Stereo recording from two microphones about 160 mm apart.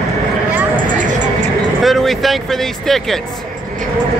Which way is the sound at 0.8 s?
55° right (ahead or behind).